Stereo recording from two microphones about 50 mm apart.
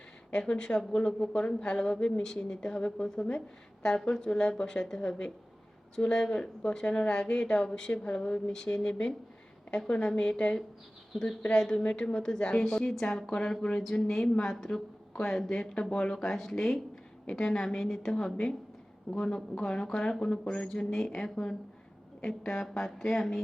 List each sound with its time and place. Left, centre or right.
0.3 s a woman's voice: centre
11.1 s speech: centre
11.5 s a woman's voice: centre
16.1 s a woman's voice: centre